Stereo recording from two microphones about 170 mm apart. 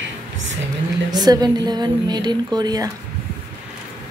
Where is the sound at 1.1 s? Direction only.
25° right (ahead or behind).